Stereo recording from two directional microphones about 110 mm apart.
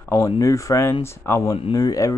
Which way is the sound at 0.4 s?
30° left (ahead or behind).